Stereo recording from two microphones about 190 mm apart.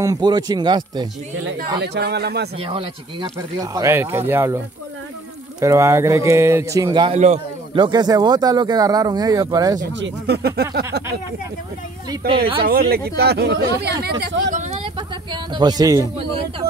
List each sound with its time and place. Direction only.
0.0 s speech: 20° right (ahead or behind)
1.8 s speech: 60° right (ahead or behind)
2.6 s speech: 30° right (ahead or behind)
3.3 s speech: 20° right (ahead or behind)
5.6 s speech: 15° right (ahead or behind)
9.9 s speech: 65° right (ahead or behind)
12.2 s speech: 55° right (ahead or behind)
14.8 s a sound: 25° right (ahead or behind)